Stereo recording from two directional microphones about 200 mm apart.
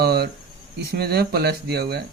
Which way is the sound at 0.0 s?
55° right (ahead or behind).